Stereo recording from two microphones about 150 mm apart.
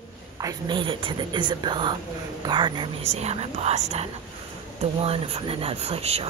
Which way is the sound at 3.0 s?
45° right (ahead or behind).